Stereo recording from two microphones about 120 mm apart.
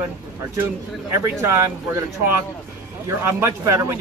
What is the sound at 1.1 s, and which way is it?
A man's voice, 25° right (ahead or behind).